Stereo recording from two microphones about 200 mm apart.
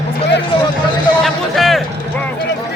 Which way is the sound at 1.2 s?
Centre (ahead or behind).